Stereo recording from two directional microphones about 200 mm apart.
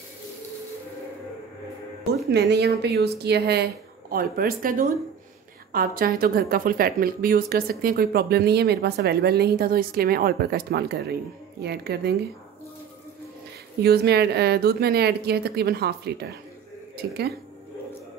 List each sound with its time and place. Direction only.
2.3 s speech: 55° right (ahead or behind)
13.8 s speech: 55° right (ahead or behind)